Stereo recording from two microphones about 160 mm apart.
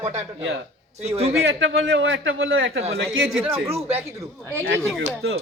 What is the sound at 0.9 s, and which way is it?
Speech, 40° right (ahead or behind).